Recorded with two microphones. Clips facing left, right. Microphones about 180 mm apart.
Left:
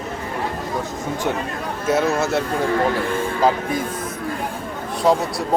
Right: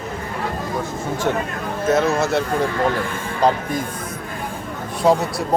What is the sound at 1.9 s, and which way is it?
Speech, 5° left (ahead or behind).